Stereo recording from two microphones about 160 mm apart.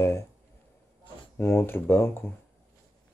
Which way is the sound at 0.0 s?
20° left (ahead or behind).